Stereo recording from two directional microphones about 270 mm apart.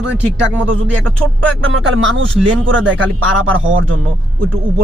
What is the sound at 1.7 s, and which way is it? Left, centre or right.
Speech, right.